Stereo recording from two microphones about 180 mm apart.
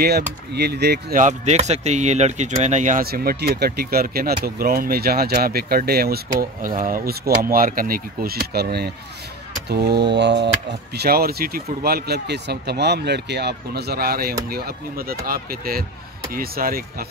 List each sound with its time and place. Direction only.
0.0 s speech: 60° right (ahead or behind)
1.1 s speech: 40° right (ahead or behind); by 10.5 s 70° right (ahead or behind)
11.0 s speech: 60° right (ahead or behind)